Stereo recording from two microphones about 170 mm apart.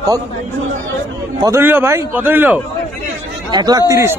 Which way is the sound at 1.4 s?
15° right (ahead or behind).